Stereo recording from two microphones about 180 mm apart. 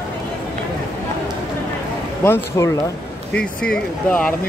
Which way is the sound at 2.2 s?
15° left (ahead or behind).